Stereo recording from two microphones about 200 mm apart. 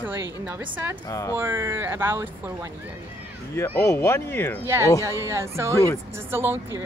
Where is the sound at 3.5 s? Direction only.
15° left (ahead or behind).